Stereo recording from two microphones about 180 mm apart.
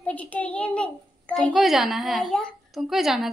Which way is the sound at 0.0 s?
10° left (ahead or behind).